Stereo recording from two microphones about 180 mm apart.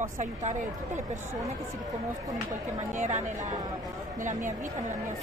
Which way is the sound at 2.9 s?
45° right (ahead or behind).